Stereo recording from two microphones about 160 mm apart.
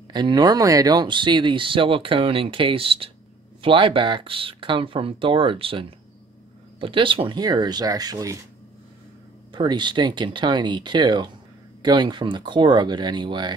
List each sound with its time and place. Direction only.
0.1 s speech: 25° right (ahead or behind)
9.5 s speech: 30° right (ahead or behind)